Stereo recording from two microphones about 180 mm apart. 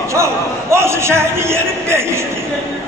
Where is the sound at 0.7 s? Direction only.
15° right (ahead or behind).